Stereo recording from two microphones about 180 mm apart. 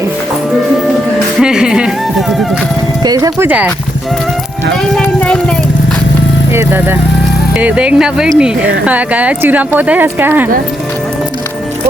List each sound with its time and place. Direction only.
1.4 s music: 5° right (ahead or behind)
3.0 s speech: 20° right (ahead or behind)
5.0 s speech: 5° left (ahead or behind)
6.5 s speech: 10° right (ahead or behind)